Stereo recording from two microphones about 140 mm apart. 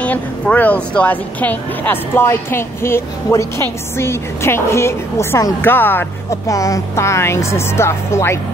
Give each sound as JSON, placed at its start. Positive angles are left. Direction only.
{"t": 0.0, "sound": "a woman's voice", "side_deg": 10}